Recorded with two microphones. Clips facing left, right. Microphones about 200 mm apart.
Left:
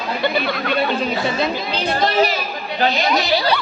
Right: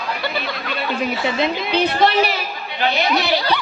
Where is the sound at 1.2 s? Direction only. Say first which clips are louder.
Even; 20° right (ahead or behind).